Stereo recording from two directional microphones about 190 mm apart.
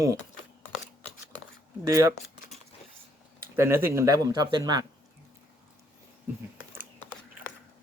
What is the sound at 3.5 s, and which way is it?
Speech, 15° right (ahead or behind).